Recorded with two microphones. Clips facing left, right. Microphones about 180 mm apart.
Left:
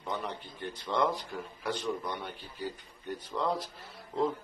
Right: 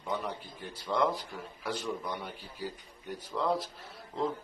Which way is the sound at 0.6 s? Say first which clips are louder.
Even; 5° right (ahead or behind).